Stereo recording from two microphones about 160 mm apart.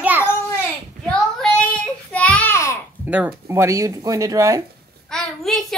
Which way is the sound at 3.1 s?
10° right (ahead or behind).